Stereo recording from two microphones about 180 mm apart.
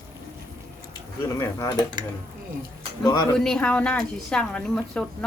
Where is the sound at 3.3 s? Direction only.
5° left (ahead or behind).